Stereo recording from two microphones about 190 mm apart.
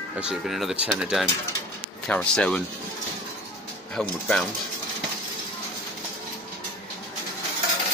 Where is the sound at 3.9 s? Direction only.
5° left (ahead or behind).